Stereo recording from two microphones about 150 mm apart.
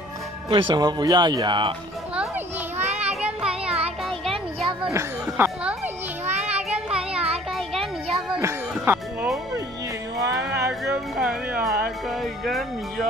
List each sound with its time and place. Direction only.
0.5 s speech: 30° right (ahead or behind)
2.8 s child singing: 10° right (ahead or behind)
3.7 s music: 40° right (ahead or behind)
4.9 s speech: 10° right (ahead or behind)
6.4 s child singing: 5° right (ahead or behind)
7.5 s music: centre (ahead or behind)
8.4 s music: 15° right (ahead or behind)
11.1 s music: centre (ahead or behind)
12.2 s speech: centre (ahead or behind)